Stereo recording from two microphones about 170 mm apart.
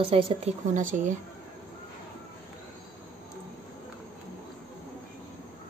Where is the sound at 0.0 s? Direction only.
35° right (ahead or behind).